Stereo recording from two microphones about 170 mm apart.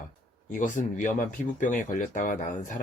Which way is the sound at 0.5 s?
50° left (ahead or behind).